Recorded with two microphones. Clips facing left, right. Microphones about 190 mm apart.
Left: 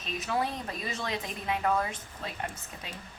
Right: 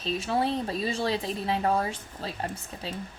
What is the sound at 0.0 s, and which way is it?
A woman's voice, 30° right (ahead or behind).